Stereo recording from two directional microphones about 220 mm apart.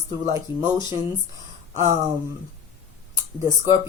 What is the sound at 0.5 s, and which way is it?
Speech, 20° left (ahead or behind).